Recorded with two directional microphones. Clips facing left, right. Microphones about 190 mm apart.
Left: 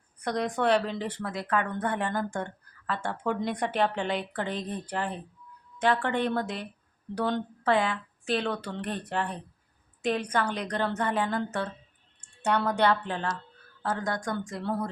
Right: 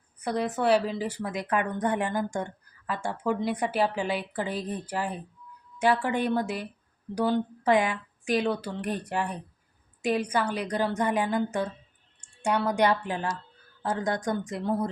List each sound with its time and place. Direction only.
0.2 s a woman's voice: 5° right (ahead or behind)